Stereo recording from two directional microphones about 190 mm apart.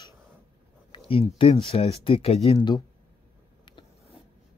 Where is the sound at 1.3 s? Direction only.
30° left (ahead or behind).